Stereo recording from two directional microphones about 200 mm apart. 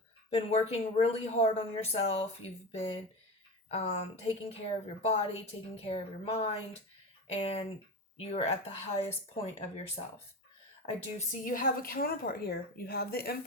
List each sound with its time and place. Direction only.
0.3 s speech: 30° left (ahead or behind)
5.7 s a woman's voice: 30° left (ahead or behind); by 13.3 s 50° left (ahead or behind)